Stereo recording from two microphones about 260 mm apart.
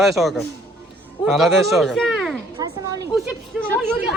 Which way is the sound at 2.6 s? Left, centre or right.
Centre.